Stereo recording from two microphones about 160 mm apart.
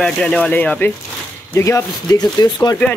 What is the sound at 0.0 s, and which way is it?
Speech, 5° left (ahead or behind).